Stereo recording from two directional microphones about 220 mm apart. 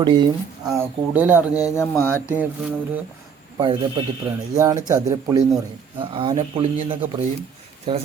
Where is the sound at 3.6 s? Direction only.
20° right (ahead or behind).